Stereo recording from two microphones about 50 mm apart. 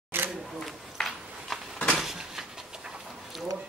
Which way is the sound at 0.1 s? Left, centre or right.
Right.